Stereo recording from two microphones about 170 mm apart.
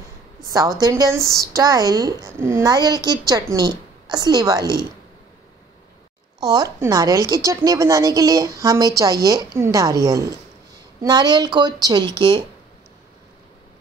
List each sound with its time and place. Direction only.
0.5 s a woman's voice: 20° right (ahead or behind)
6.4 s a woman's voice: 20° right (ahead or behind)